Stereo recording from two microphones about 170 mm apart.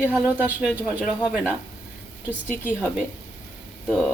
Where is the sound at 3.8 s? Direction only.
5° left (ahead or behind).